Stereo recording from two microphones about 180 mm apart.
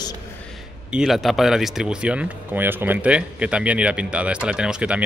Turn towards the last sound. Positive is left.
turn(degrees=-5)  # may be behind; listen again after turning